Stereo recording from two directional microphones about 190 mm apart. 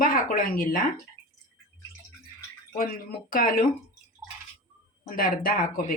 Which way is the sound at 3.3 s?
45° left (ahead or behind).